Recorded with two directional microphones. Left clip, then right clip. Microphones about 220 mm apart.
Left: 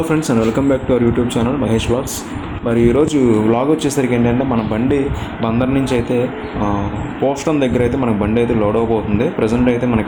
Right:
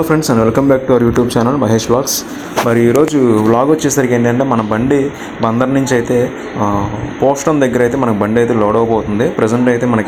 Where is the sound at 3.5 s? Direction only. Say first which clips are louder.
Right 4 dB; 5° right (ahead or behind).